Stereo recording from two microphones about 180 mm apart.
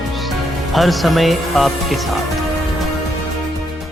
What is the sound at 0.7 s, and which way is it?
Speech, centre (ahead or behind).